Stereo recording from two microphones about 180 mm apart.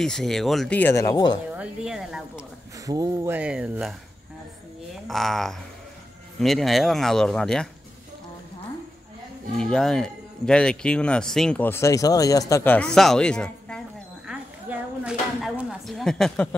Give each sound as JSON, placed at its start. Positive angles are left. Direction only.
{"t": 0.0, "sound": "speech", "side_deg": 0}
{"t": 1.5, "sound": "speech", "side_deg": -5}
{"t": 2.9, "sound": "speech", "side_deg": -20}
{"t": 3.3, "sound": "speech", "side_deg": -5}
{"t": 5.0, "sound": "speech", "side_deg": 0}
{"t": 9.6, "sound": "speech", "side_deg": 5}